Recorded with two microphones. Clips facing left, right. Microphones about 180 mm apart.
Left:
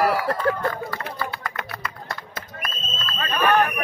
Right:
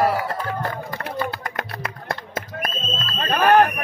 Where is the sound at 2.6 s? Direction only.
40° right (ahead or behind).